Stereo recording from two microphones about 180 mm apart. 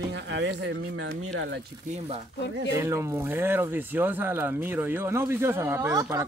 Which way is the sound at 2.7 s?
15° right (ahead or behind).